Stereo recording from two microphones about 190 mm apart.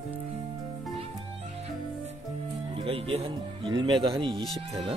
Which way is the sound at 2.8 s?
30° right (ahead or behind).